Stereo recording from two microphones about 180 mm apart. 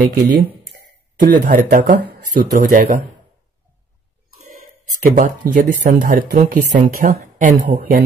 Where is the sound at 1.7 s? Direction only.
50° right (ahead or behind).